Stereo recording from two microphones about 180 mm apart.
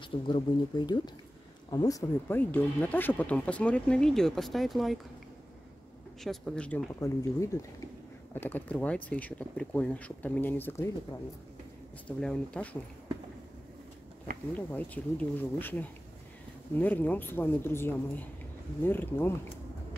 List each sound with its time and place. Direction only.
0.0 s speech: 25° left (ahead or behind); by 4.9 s centre (ahead or behind)
6.2 s speech: 5° left (ahead or behind)
12.2 s speech: 5° left (ahead or behind)
14.7 s speech: 10° left (ahead or behind)